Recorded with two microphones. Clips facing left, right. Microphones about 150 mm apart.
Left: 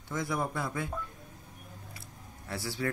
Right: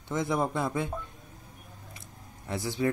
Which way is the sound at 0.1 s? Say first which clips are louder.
Right 4 dB; 20° right (ahead or behind).